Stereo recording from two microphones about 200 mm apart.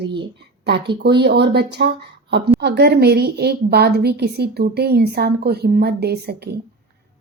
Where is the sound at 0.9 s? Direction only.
55° right (ahead or behind).